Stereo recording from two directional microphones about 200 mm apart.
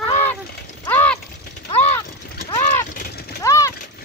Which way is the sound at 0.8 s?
5° left (ahead or behind).